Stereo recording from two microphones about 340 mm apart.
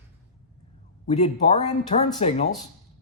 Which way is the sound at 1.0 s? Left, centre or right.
Centre.